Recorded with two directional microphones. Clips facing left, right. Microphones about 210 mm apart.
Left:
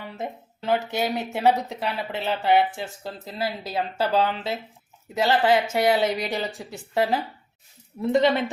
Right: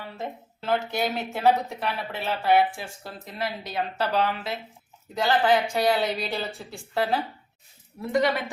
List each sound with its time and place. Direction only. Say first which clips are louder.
0.0 s speech: left 2 dB; 15° left (ahead or behind)